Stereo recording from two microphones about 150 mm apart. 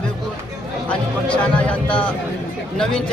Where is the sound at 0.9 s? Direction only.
35° left (ahead or behind).